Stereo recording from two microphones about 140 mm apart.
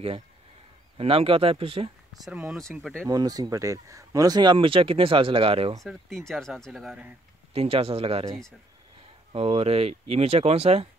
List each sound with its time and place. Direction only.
0.9 s speech: 40° right (ahead or behind)
2.2 s speech: 5° right (ahead or behind)
3.1 s speech: 25° right (ahead or behind); by 5.8 s 40° right (ahead or behind)
5.9 s speech: centre (ahead or behind)
7.5 s speech: 45° right (ahead or behind)